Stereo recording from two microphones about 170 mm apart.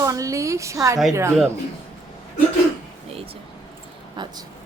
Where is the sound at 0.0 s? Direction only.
20° right (ahead or behind).